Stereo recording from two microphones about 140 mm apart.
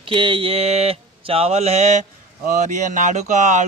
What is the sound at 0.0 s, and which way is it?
Speech, 35° right (ahead or behind).